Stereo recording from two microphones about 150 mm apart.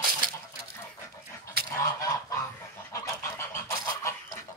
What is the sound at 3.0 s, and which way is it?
Fowl, 20° left (ahead or behind).